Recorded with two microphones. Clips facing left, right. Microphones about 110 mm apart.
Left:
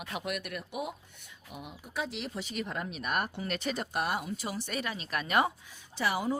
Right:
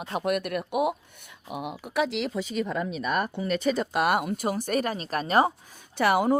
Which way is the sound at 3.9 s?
80° right.